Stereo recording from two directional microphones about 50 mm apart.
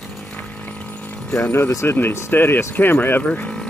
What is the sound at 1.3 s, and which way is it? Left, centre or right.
Speech, left.